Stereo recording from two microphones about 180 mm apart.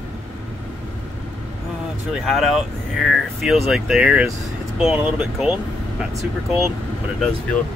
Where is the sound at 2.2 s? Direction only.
Centre (ahead or behind).